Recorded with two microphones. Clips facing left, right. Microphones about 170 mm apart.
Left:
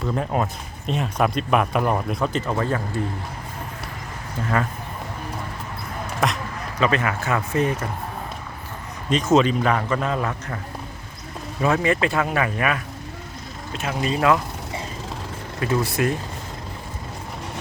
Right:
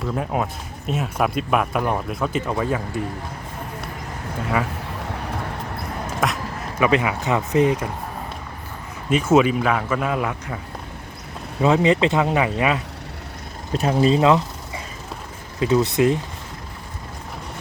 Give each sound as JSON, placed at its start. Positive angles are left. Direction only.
{"t": 0.3, "sound": "speech", "side_deg": -5}
{"t": 6.1, "sound": "a sound", "side_deg": -5}
{"t": 6.8, "sound": "a man's voice", "side_deg": -15}
{"t": 9.0, "sound": "a man's voice", "side_deg": -10}
{"t": 11.6, "sound": "speech", "side_deg": -20}
{"t": 13.7, "sound": "speech", "side_deg": -35}
{"t": 15.6, "sound": "speech", "side_deg": -20}